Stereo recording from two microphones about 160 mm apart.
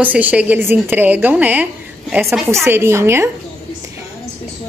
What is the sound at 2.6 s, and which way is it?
Speech, 15° right (ahead or behind).